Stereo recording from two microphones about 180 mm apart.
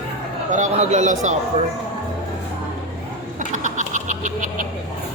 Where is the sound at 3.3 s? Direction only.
45° right (ahead or behind).